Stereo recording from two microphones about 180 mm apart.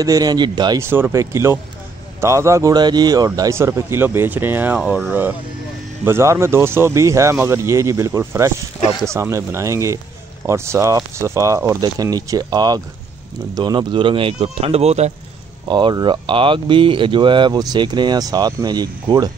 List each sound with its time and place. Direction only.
0.0 s a man's voice: 20° right (ahead or behind); by 15.1 s 35° right (ahead or behind)
15.7 s speech: 25° right (ahead or behind)